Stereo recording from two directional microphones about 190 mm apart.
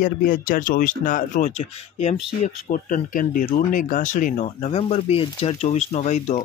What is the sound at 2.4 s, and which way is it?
Speech, 45° left (ahead or behind).